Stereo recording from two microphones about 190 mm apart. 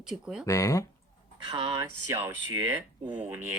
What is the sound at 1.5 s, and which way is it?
Speech, 25° right (ahead or behind).